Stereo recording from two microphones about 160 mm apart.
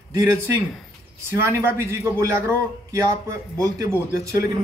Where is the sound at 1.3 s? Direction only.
15° right (ahead or behind).